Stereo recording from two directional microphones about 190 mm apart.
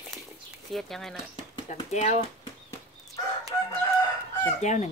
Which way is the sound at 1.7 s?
35° left (ahead or behind).